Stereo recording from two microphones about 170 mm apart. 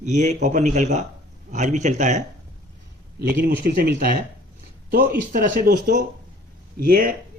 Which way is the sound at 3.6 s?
60° right (ahead or behind).